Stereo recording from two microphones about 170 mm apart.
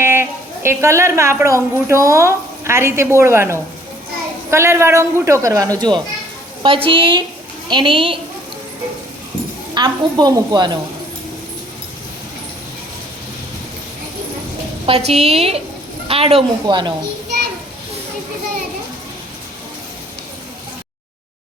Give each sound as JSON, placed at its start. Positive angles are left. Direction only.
{"t": 0.0, "sound": "a woman's voice", "side_deg": -15}
{"t": 9.7, "sound": "a woman's voice", "side_deg": -25}
{"t": 14.8, "sound": "a woman's voice", "side_deg": -35}